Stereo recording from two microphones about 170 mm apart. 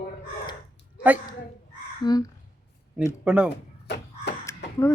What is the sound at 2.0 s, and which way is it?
Speech, 25° left (ahead or behind).